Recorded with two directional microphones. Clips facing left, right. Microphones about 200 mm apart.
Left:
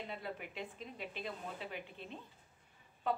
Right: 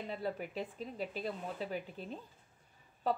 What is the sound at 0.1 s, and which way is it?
A woman's voice, 40° right (ahead or behind).